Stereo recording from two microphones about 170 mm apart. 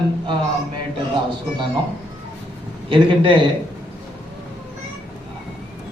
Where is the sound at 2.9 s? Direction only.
30° right (ahead or behind).